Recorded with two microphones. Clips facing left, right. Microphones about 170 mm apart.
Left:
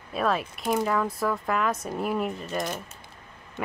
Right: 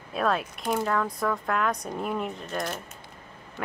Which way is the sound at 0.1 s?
Centre (ahead or behind).